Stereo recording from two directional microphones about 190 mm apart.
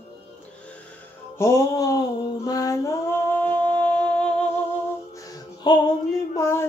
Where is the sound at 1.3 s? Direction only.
15° left (ahead or behind).